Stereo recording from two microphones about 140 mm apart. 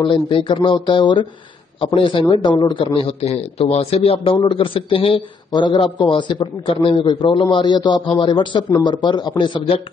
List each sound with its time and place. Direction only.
0.0 s a man's voice: 35° left (ahead or behind)